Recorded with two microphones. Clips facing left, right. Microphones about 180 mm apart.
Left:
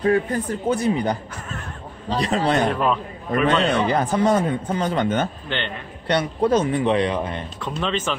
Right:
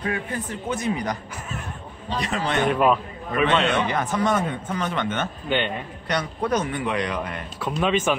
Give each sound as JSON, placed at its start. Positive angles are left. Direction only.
{"t": 0.0, "sound": "speech", "side_deg": 40}
{"t": 2.7, "sound": "a man's voice", "side_deg": -5}
{"t": 3.4, "sound": "speech", "side_deg": 35}
{"t": 5.5, "sound": "speech", "side_deg": -10}
{"t": 6.0, "sound": "a man's voice", "side_deg": 30}
{"t": 7.8, "sound": "speech", "side_deg": -10}